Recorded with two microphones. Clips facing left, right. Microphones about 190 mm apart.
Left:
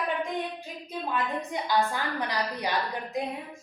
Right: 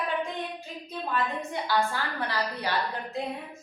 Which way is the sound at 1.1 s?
15° left (ahead or behind).